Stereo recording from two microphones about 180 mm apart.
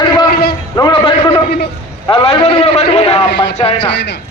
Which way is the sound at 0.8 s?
25° left (ahead or behind).